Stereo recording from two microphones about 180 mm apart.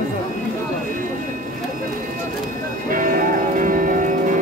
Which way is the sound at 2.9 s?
50° right (ahead or behind).